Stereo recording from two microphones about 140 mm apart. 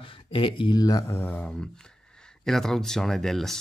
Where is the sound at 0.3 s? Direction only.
40° left (ahead or behind); by 1.5 s 15° left (ahead or behind).